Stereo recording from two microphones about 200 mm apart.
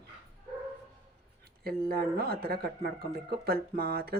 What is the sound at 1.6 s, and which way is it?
Speech, 50° right (ahead or behind).